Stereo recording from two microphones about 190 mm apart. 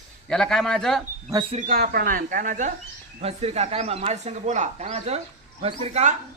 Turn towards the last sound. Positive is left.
turn(degrees=-35)  # may be behind; listen again after turning